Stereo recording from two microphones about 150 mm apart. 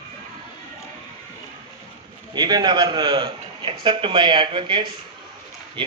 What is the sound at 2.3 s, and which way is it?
A man's voice, 30° right (ahead or behind).